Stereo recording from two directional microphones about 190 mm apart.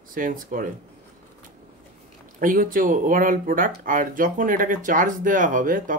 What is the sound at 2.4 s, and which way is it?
Speech, 45° right (ahead or behind).